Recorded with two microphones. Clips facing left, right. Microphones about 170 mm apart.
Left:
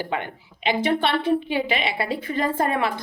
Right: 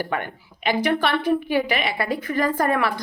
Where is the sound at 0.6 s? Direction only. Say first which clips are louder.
Even; 25° left (ahead or behind).